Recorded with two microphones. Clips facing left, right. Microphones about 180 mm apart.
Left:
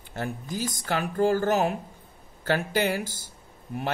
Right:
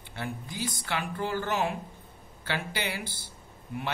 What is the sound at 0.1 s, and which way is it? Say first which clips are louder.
Speech: left 5 dB; 45° left (ahead or behind).